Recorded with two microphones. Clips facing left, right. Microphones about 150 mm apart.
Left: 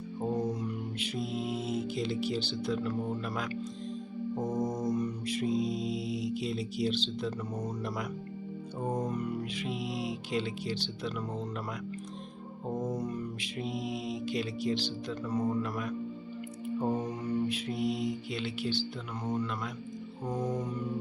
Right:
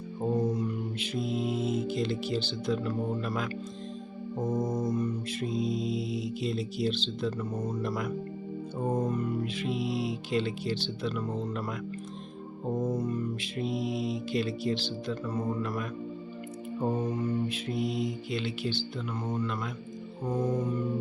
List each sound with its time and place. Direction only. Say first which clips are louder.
0.3 s music: right 4 dB; 10° left (ahead or behind)
4.9 s mantra: right 1 dB; 15° left (ahead or behind)
8.8 s music: right 3 dB; 5° right (ahead or behind)
9.0 s mantra: right 3 dB; 15° left (ahead or behind)
12.7 s music: right 4 dB; centre (ahead or behind)
13.0 s mantra: right 4 dB; 15° left (ahead or behind)
16.8 s music: right 2 dB; centre (ahead or behind)
17.1 s mantra: right 2 dB; 10° left (ahead or behind)
19.5 s music: right 2 dB; 5° right (ahead or behind)